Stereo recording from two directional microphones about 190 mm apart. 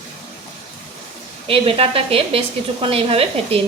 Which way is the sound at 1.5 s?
30° right (ahead or behind).